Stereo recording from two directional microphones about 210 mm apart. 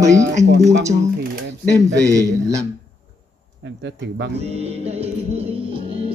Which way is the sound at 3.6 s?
55° right (ahead or behind).